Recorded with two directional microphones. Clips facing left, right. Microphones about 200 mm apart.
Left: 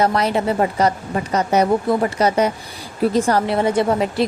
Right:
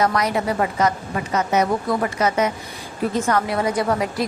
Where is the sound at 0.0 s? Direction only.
30° left (ahead or behind).